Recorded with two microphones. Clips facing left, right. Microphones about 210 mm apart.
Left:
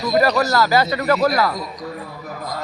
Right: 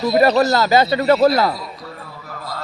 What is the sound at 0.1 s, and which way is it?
A man's voice, 25° right (ahead or behind).